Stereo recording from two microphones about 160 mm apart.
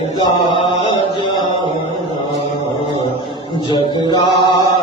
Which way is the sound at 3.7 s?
30° left (ahead or behind).